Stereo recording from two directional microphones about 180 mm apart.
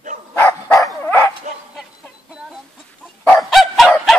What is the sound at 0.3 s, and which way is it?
Dog, 10° left (ahead or behind).